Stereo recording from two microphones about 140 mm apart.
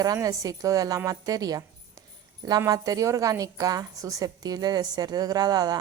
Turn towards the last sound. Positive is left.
turn(degrees=-30)  # may be behind; listen again after turning